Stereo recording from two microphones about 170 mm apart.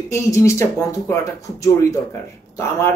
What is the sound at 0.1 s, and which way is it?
A woman's voice, 20° left (ahead or behind).